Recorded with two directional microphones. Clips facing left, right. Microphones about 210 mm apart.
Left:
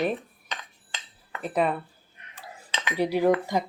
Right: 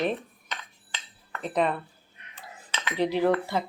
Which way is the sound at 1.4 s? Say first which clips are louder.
Left 1 dB; 5° left (ahead or behind).